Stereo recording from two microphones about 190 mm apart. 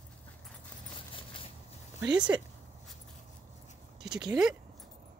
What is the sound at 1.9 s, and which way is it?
Speech, 20° right (ahead or behind).